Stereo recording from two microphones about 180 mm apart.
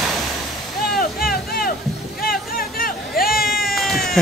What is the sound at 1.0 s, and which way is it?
Vehicle, 55° left (ahead or behind).